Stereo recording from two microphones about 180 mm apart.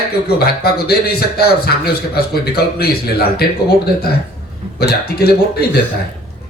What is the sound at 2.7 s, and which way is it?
Speech, 60° left (ahead or behind).